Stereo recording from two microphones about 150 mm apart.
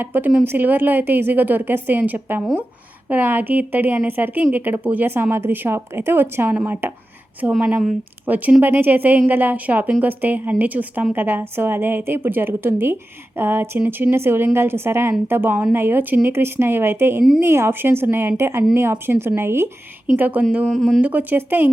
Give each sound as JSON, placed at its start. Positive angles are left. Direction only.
{"t": 0.0, "sound": "a woman's voice", "side_deg": -15}
{"t": 8.3, "sound": "a woman's voice", "side_deg": -10}